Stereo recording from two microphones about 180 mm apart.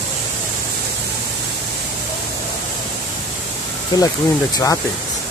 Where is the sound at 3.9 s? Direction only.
20° left (ahead or behind).